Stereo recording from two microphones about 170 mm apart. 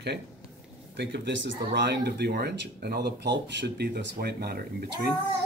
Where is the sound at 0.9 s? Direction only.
90° right.